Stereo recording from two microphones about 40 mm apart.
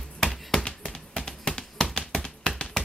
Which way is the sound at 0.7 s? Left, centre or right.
Centre.